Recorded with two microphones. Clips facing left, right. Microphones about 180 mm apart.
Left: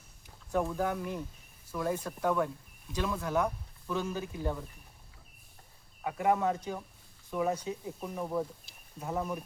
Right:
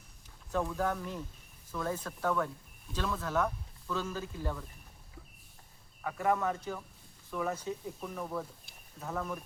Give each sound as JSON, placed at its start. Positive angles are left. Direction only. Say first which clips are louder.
{"t": 0.5, "sound": "speech", "louder": "left 2 dB", "side_deg": 10}
{"t": 6.0, "sound": "speech", "louder": "left 2 dB", "side_deg": 20}